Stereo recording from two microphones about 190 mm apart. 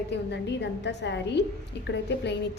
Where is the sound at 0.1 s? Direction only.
65° left (ahead or behind).